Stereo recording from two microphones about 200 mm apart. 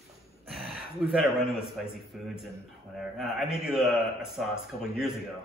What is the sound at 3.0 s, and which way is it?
A man's voice, centre (ahead or behind).